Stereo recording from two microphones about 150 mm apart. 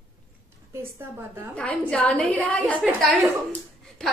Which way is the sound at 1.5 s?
5° left (ahead or behind).